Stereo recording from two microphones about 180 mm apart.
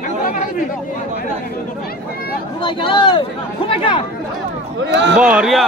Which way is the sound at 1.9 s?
55° left (ahead or behind).